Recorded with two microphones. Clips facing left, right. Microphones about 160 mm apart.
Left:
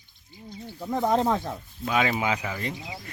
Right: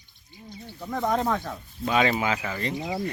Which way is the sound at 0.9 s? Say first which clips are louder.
Left 2 dB; 30° left (ahead or behind).